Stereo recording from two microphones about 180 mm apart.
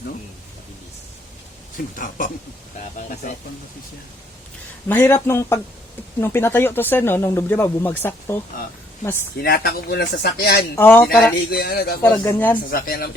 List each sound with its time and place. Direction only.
2.0 s speech: 50° left (ahead or behind)
4.9 s speech: 15° left (ahead or behind)
9.4 s speech: 60° left (ahead or behind)
10.8 s speech: 10° left (ahead or behind)
11.2 s speech: 55° left (ahead or behind)
12.0 s speech: 10° left (ahead or behind)
12.7 s speech: 55° left (ahead or behind)